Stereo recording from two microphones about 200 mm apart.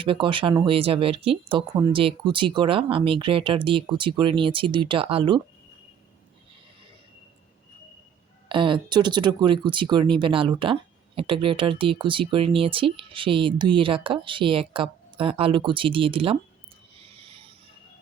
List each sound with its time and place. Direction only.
0.0 s speech: 25° right (ahead or behind)
8.4 s speech: 25° right (ahead or behind)
17.0 s a sound: 25° right (ahead or behind)